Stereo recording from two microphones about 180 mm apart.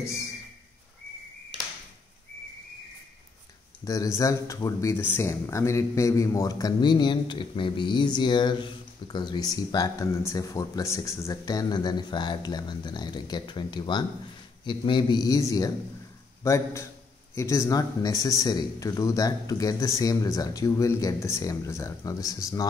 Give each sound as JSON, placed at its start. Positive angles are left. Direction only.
{"t": 0.0, "sound": "speech", "side_deg": 15}
{"t": 3.8, "sound": "a man's voice", "side_deg": 20}